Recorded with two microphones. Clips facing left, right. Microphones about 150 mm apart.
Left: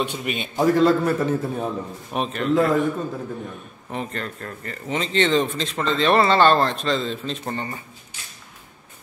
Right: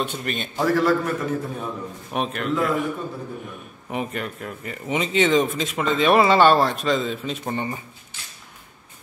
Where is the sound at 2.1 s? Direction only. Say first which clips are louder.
Left 1 dB; centre (ahead or behind).